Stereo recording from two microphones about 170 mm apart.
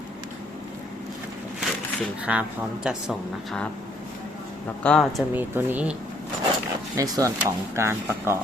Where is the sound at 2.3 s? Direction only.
10° right (ahead or behind).